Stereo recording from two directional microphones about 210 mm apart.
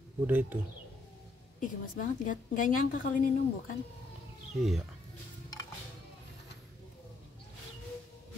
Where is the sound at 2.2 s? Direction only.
40° left (ahead or behind).